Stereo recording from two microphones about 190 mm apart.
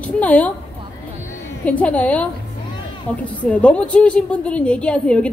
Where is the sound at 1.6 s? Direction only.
5° left (ahead or behind).